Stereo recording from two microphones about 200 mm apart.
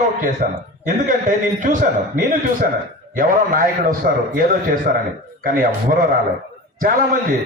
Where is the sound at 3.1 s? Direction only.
45° right (ahead or behind).